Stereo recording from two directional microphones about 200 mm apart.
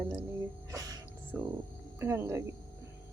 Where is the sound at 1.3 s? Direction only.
5° right (ahead or behind).